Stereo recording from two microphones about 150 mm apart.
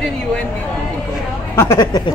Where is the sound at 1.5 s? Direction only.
15° left (ahead or behind).